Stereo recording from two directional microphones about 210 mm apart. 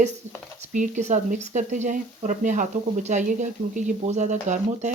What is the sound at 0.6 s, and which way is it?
Speech, 35° right (ahead or behind).